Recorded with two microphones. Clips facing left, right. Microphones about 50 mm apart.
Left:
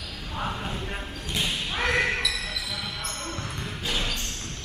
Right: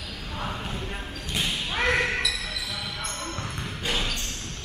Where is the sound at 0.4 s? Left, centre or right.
Centre.